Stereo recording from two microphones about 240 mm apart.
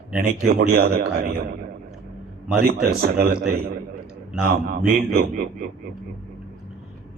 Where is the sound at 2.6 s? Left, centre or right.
Right.